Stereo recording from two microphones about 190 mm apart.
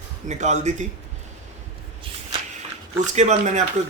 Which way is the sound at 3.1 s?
40° right (ahead or behind).